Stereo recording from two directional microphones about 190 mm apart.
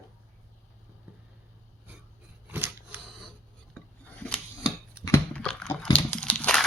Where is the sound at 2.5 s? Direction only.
10° right (ahead or behind).